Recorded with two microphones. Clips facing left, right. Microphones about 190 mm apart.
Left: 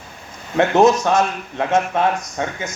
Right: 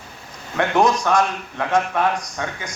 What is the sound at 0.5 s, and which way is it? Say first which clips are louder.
A man's voice: left 4 dB; 25° left (ahead or behind).